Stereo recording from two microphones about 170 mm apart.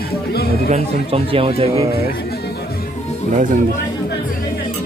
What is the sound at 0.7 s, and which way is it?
Speech, 35° right (ahead or behind).